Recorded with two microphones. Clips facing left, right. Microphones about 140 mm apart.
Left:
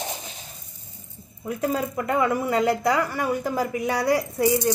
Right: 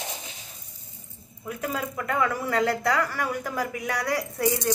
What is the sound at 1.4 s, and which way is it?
Speech, 30° left (ahead or behind).